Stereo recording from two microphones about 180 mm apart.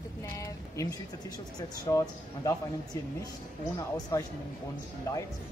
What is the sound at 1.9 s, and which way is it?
Speech, 20° left (ahead or behind).